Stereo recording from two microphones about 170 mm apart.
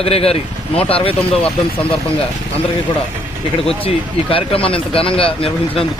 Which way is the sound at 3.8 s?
35° left (ahead or behind).